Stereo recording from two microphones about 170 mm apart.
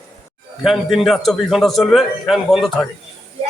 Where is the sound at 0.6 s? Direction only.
Centre (ahead or behind).